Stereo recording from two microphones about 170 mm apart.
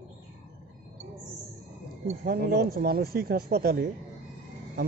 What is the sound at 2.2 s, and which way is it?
Speech, 70° right (ahead or behind).